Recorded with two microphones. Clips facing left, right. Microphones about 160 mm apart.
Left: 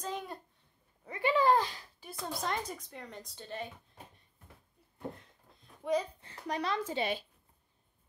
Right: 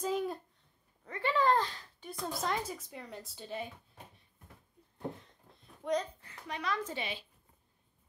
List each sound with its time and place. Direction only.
0.0 s babbling: 5° right (ahead or behind)
1.0 s a child's voice: 10° left (ahead or behind); by 3.6 s 5° right (ahead or behind)
5.1 s a sound: centre (ahead or behind)
6.4 s a woman's voice: 40° left (ahead or behind)